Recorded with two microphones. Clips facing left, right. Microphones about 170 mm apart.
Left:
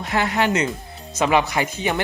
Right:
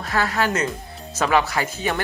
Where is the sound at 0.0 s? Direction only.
20° left (ahead or behind).